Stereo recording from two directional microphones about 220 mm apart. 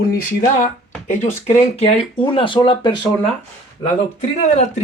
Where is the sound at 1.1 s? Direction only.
30° left (ahead or behind).